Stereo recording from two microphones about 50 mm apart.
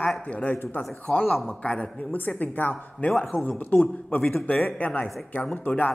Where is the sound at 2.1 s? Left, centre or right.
Left.